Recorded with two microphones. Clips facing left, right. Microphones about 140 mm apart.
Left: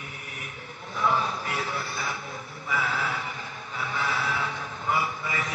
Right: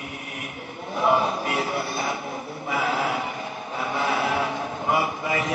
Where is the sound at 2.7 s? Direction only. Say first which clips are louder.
Right 5 dB; 20° right (ahead or behind).